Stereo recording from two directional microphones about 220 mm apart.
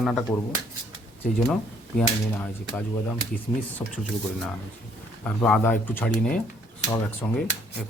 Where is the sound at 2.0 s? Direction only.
5° left (ahead or behind).